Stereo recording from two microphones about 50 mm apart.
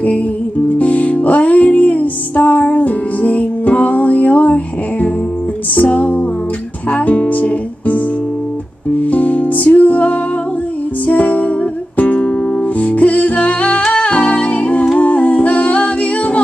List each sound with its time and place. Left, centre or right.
0.7 s music: left
5.8 s music: left
9.0 s music: left
15.0 s humming: left